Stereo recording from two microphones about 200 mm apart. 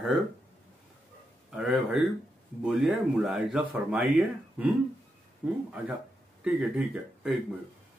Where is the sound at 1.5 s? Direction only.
5° right (ahead or behind).